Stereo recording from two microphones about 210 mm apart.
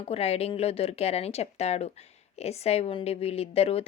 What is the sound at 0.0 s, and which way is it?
A woman's voice, 30° left (ahead or behind).